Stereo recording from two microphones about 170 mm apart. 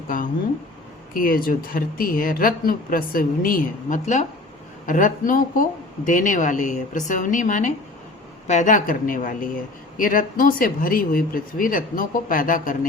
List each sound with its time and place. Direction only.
1.1 s a woman's voice: 55° left (ahead or behind)